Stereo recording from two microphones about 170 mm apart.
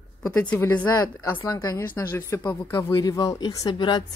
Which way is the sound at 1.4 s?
20° left (ahead or behind).